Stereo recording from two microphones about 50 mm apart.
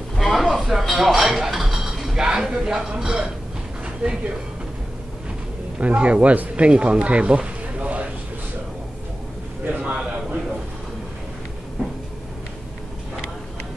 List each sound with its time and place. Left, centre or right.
0.1 s music: centre
5.8 s speech: right
9.7 s a sound: right